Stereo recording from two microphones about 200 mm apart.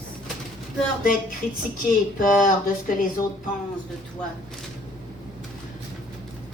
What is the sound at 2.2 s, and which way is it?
Speech, 40° left (ahead or behind).